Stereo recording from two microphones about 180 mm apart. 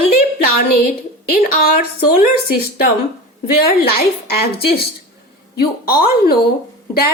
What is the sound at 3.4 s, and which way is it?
A woman's voice, 60° left (ahead or behind).